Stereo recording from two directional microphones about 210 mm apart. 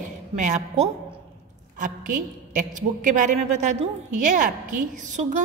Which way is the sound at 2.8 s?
35° right (ahead or behind).